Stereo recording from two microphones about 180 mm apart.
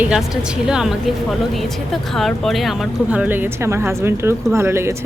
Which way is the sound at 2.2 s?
Centre (ahead or behind).